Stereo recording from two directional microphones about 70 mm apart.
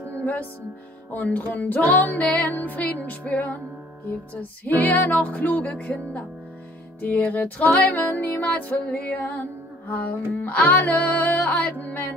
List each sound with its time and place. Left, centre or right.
0.2 s music: left